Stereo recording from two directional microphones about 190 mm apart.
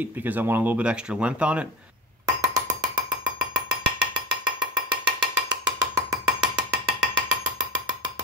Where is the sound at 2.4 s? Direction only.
15° right (ahead or behind).